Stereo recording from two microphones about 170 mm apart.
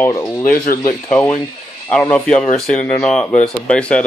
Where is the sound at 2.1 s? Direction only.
5° left (ahead or behind).